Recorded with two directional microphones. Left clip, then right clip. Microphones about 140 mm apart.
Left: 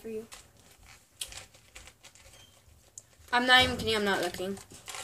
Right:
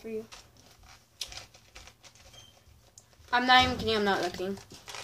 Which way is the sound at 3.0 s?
25° left (ahead or behind).